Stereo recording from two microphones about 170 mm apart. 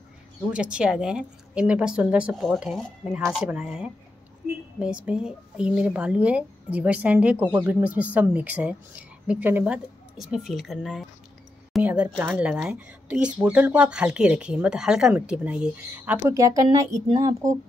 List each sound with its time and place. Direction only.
0.5 s speech: 5° right (ahead or behind)
16.3 s a woman's voice: 20° right (ahead or behind)